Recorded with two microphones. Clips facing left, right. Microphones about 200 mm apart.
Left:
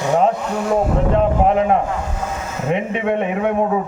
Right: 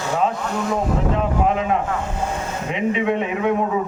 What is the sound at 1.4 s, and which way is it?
A man's voice, 50° left (ahead or behind).